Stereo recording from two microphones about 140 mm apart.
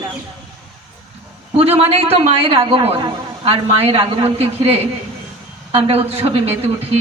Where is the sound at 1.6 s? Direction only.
45° right (ahead or behind).